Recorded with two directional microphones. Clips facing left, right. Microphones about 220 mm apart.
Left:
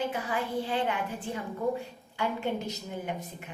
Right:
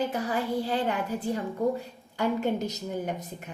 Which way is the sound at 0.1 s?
40° right (ahead or behind).